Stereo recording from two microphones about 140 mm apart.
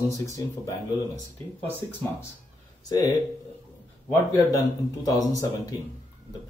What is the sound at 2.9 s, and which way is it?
Speech, 25° left (ahead or behind).